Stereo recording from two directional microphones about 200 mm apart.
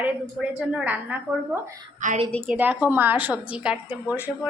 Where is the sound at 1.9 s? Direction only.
40° right (ahead or behind).